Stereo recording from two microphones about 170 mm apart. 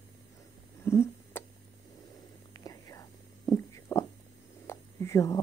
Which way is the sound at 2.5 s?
20° left (ahead or behind).